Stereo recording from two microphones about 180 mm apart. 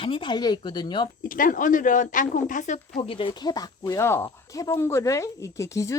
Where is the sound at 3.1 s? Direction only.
30° left (ahead or behind).